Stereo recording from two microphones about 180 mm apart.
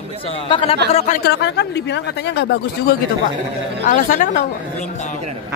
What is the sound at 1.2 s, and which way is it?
Speech, 70° left (ahead or behind).